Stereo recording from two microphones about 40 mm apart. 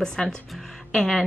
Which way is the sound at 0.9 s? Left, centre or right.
Centre.